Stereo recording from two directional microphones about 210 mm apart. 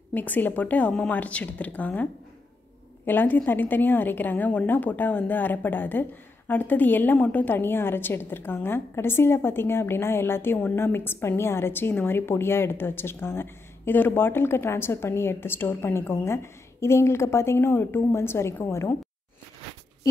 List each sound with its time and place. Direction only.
0.1 s a woman's voice: 10° left (ahead or behind)
3.1 s a woman's voice: 10° left (ahead or behind)